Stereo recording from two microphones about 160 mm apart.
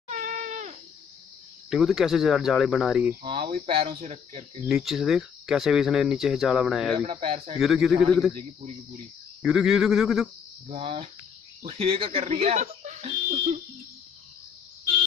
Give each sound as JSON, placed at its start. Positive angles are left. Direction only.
{"t": 0.1, "sound": "a sound", "side_deg": -50}
{"t": 1.7, "sound": "speech", "side_deg": -5}
{"t": 3.3, "sound": "speech", "side_deg": -30}
{"t": 4.0, "sound": "speech", "side_deg": -45}
{"t": 4.6, "sound": "speech", "side_deg": -5}
{"t": 7.1, "sound": "speech", "side_deg": -40}
{"t": 7.5, "sound": "speech", "side_deg": -5}
{"t": 8.1, "sound": "a man's voice", "side_deg": 5}
{"t": 9.4, "sound": "speech", "side_deg": -5}
{"t": 10.7, "sound": "speech", "side_deg": -35}